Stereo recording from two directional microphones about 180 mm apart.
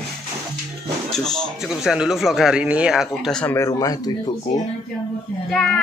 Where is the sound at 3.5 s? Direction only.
20° left (ahead or behind).